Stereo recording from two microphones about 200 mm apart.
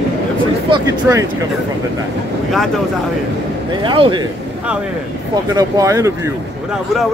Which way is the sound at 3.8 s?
25° right (ahead or behind).